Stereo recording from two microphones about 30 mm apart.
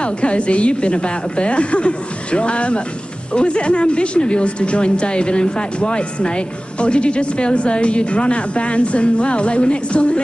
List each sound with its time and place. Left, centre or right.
0.0 s speech: left